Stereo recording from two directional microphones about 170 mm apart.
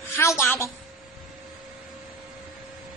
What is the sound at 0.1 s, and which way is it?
Speech, 15° left (ahead or behind).